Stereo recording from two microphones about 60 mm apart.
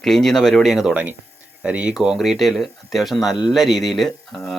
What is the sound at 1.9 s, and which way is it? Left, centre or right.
Speech, centre.